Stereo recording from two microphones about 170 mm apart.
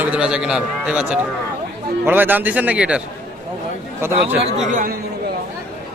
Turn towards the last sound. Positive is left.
turn(degrees=-50)  # may be behind; listen again after turning